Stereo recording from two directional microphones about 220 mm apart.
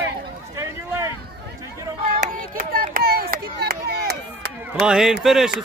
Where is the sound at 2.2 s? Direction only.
40° right (ahead or behind).